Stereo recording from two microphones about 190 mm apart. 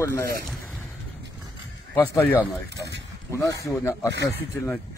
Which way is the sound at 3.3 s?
15° left (ahead or behind).